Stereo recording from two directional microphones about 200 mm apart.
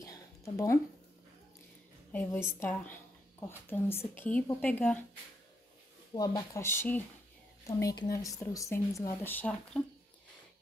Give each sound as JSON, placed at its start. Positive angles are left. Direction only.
{"t": 0.0, "sound": "a sound", "side_deg": 15}
{"t": 2.1, "sound": "speech", "side_deg": 10}
{"t": 6.1, "sound": "speech", "side_deg": 20}